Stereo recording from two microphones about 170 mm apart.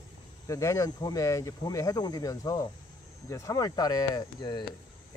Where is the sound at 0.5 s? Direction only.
20° left (ahead or behind).